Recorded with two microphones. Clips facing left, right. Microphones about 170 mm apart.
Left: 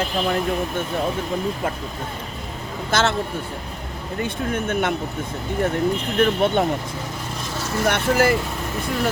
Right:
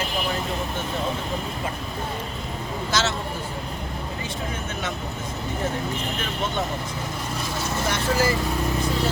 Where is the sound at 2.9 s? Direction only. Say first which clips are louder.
Left 5 dB; 55° left (ahead or behind).